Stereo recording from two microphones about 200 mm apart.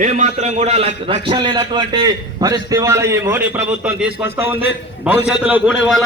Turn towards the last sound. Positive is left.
turn(degrees=-5)  # may be behind; listen again after turning